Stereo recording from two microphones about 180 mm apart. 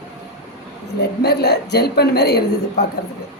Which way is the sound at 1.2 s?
65° left (ahead or behind).